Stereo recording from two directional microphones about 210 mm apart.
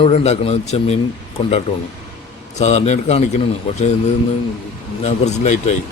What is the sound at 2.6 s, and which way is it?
Speech, 30° left (ahead or behind).